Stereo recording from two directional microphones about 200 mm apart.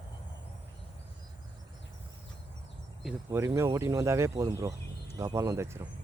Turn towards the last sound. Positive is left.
turn(degrees=-15)  # may be behind; listen again after turning